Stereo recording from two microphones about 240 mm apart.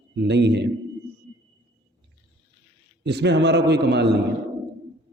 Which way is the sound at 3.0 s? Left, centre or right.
Right.